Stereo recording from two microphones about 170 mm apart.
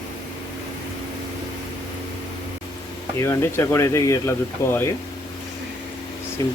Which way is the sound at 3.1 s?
15° left (ahead or behind).